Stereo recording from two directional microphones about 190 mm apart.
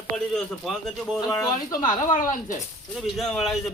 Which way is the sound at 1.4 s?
20° left (ahead or behind).